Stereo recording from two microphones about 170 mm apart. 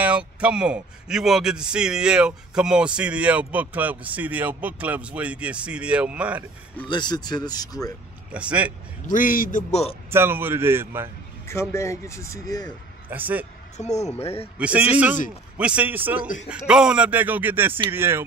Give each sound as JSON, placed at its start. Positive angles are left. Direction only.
{"t": 0.0, "sound": "a man's voice", "side_deg": -5}
{"t": 6.9, "sound": "speech", "side_deg": 25}
{"t": 8.3, "sound": "a man's voice", "side_deg": -5}
{"t": 9.0, "sound": "a man's voice", "side_deg": 50}
{"t": 10.1, "sound": "a man's voice", "side_deg": -15}
{"t": 11.7, "sound": "speech", "side_deg": 15}
{"t": 13.1, "sound": "a man's voice", "side_deg": -10}
{"t": 13.7, "sound": "speech", "side_deg": 40}
{"t": 14.6, "sound": "a man's voice", "side_deg": -5}